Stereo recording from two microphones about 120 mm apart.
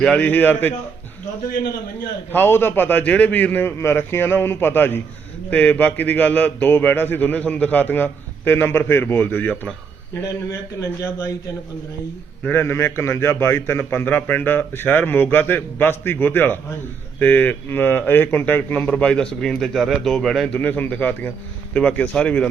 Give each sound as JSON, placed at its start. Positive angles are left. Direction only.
{"t": 0.0, "sound": "speech", "side_deg": 10}
{"t": 2.3, "sound": "a man's voice", "side_deg": 20}
{"t": 12.4, "sound": "speech", "side_deg": 15}